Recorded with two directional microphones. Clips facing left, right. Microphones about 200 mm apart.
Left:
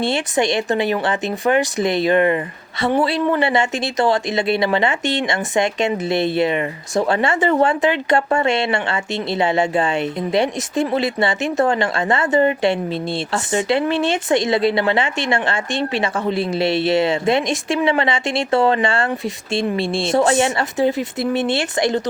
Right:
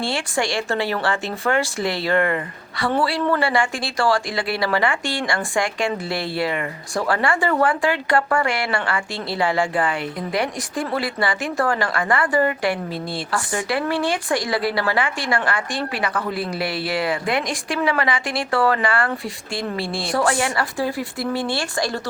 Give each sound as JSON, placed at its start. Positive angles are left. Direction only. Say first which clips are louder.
{"t": 0.0, "sound": "speech", "louder": "left 5 dB", "side_deg": 20}